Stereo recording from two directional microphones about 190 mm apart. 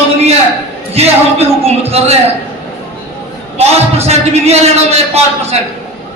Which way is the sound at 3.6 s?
35° right (ahead or behind).